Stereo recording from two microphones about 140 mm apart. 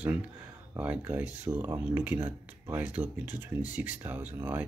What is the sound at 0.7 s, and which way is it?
Speech, 10° right (ahead or behind).